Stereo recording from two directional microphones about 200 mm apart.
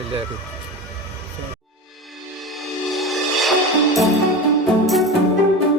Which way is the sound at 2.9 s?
Centre (ahead or behind).